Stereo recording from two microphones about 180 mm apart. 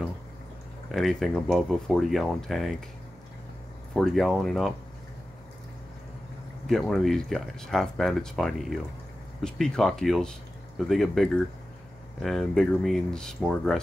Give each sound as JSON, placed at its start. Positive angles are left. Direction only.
{"t": 0.9, "sound": "speech", "side_deg": 0}
{"t": 3.9, "sound": "speech", "side_deg": 0}
{"t": 6.7, "sound": "speech", "side_deg": 0}